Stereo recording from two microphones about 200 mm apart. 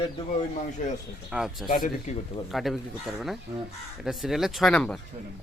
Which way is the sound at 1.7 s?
45° left (ahead or behind).